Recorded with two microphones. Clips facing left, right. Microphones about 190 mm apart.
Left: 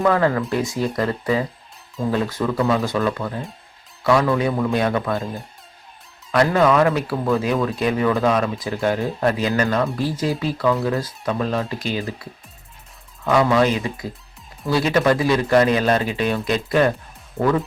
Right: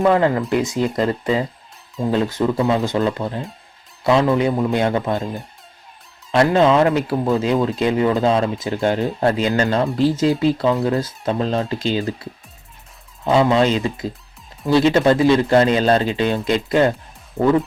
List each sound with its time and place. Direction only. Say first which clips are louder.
0.0 s speech: right 2 dB; 20° right (ahead or behind)
6.3 s speech: right 2 dB; 25° right (ahead or behind)